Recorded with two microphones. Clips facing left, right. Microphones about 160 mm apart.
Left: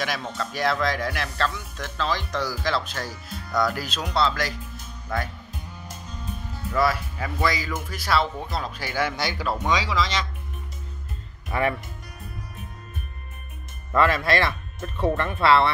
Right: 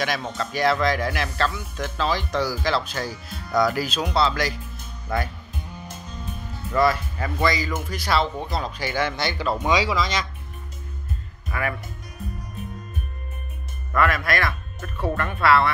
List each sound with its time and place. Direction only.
0.0 s speech: centre (ahead or behind)
6.7 s speech: 5° left (ahead or behind)
9.7 s speech: 10° right (ahead or behind)
11.5 s speech: 30° left (ahead or behind)
13.9 s speech: 25° left (ahead or behind)